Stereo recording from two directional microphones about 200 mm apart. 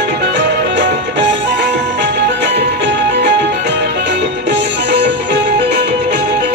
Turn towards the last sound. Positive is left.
turn(degrees=-60)  # may be behind; listen again after turning